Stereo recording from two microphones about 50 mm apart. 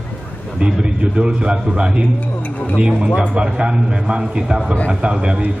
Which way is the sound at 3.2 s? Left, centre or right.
Right.